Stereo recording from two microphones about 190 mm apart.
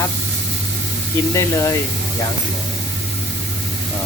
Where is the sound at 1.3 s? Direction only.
15° left (ahead or behind).